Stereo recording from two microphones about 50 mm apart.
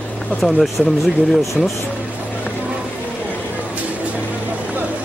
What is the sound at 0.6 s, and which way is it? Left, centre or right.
Speech, centre.